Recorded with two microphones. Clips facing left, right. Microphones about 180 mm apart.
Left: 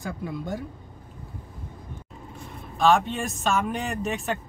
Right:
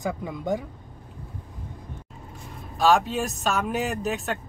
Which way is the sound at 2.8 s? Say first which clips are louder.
Even; centre (ahead or behind).